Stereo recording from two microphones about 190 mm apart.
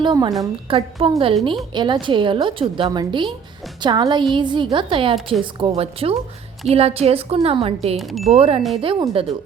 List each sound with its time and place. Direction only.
0.0 s a woman's voice: 20° right (ahead or behind)
7.9 s speech: centre (ahead or behind)
8.3 s a woman's voice: 30° right (ahead or behind)